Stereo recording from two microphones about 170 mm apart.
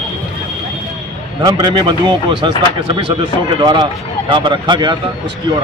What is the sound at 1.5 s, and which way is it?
Speech, 25° right (ahead or behind).